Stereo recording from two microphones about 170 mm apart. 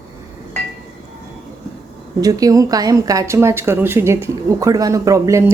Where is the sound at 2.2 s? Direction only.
20° right (ahead or behind).